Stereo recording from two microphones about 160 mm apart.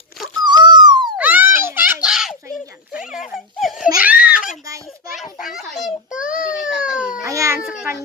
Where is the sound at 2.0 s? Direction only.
5° right (ahead or behind).